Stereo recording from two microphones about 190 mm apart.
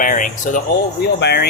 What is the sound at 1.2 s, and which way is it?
Speech, 60° left (ahead or behind).